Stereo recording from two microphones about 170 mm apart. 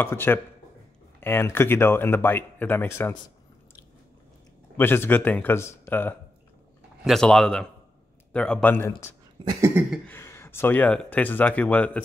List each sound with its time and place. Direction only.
0.0 s speech: 10° left (ahead or behind)
4.7 s speech: 10° left (ahead or behind)
9.4 s cough: 25° right (ahead or behind)
10.0 s speech: 15° left (ahead or behind)